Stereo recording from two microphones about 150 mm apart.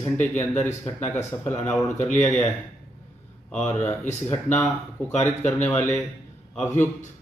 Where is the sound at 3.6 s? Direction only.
10° left (ahead or behind).